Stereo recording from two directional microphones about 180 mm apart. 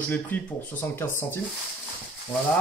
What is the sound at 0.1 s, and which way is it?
Speech, 10° left (ahead or behind).